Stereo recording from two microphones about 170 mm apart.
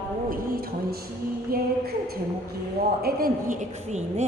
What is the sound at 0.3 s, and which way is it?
Speech, 60° right (ahead or behind).